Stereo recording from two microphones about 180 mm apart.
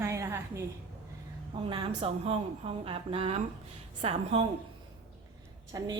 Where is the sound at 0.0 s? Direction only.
15° right (ahead or behind).